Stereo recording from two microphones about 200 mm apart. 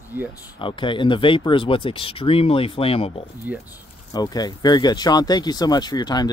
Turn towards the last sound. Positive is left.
turn(degrees=20)  # may be behind; listen again after turning